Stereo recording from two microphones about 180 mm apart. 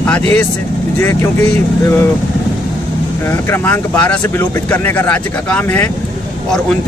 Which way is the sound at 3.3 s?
10° left (ahead or behind).